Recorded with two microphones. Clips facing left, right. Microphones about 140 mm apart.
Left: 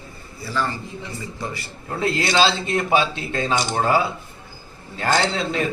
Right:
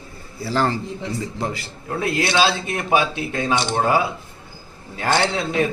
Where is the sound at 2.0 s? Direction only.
10° right (ahead or behind).